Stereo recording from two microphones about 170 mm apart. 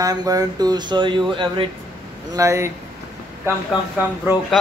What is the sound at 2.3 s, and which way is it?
Speech, 20° right (ahead or behind).